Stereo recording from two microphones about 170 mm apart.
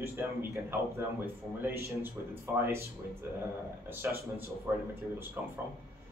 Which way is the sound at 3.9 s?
10° right (ahead or behind).